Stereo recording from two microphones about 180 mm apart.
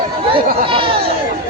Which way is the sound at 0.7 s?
30° right (ahead or behind).